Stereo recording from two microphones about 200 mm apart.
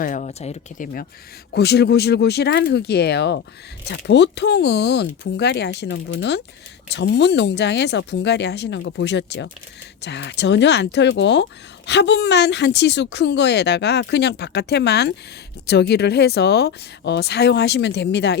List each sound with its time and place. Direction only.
0.0 s speech: 40° left (ahead or behind)
1.5 s a woman's voice: 55° left (ahead or behind)